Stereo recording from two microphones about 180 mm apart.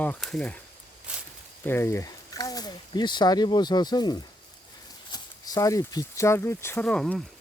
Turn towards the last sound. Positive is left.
turn(degrees=5)  # may be behind; listen again after turning